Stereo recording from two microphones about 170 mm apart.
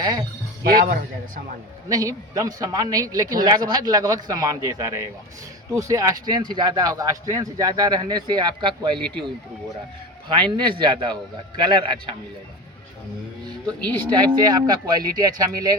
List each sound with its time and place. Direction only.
0.0 s speech: 25° right (ahead or behind)
1.9 s speech: 20° right (ahead or behind)
10.2 s speech: 25° right (ahead or behind)
13.8 s speech: 25° right (ahead or behind)